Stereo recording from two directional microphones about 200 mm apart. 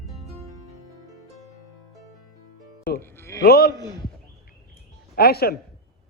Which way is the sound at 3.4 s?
50° left (ahead or behind).